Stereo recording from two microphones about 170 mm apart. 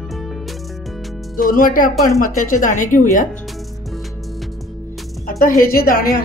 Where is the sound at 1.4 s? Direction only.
55° left (ahead or behind).